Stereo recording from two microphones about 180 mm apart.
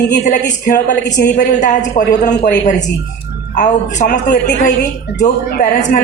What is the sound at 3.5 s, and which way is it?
A woman's voice, 45° left (ahead or behind).